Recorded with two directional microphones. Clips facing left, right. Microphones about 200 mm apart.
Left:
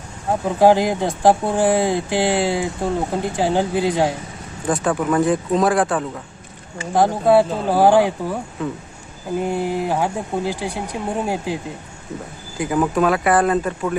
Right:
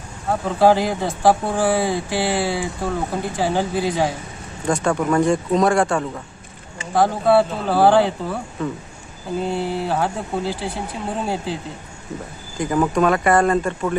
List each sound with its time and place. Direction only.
0.3 s speech: 15° left (ahead or behind)
4.6 s speech: 5° left (ahead or behind)
6.9 s speech: 15° left (ahead or behind)
9.4 s speech: 15° left (ahead or behind)